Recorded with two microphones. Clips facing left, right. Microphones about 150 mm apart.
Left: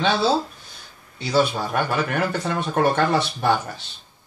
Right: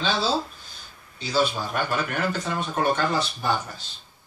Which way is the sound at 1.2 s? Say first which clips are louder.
Left 4 dB; 60° left (ahead or behind).